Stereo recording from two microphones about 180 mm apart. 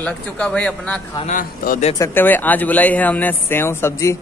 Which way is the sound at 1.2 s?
50° left (ahead or behind).